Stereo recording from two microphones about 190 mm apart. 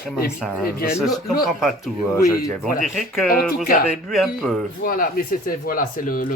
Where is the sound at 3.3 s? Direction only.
50° left (ahead or behind).